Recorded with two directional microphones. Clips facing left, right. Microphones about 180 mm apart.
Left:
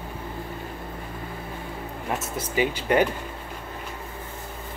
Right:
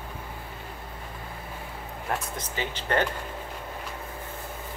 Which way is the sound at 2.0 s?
5° left (ahead or behind).